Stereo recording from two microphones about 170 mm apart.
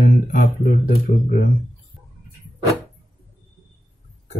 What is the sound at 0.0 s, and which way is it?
Speech, 50° left (ahead or behind).